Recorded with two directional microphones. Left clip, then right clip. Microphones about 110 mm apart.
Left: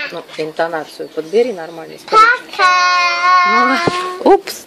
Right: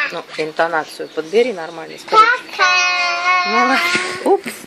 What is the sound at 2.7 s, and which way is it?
Child singing, 20° left (ahead or behind).